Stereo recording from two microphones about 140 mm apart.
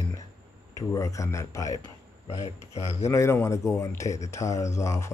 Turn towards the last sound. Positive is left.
turn(degrees=20)  # may be behind; listen again after turning